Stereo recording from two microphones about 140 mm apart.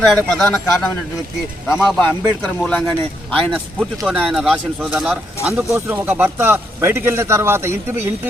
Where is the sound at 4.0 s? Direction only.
5° right (ahead or behind).